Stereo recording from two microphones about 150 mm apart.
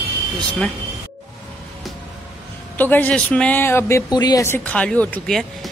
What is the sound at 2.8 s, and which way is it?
Speech, 10° left (ahead or behind).